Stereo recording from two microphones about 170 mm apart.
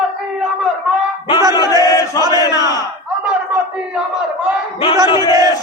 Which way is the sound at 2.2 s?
20° right (ahead or behind).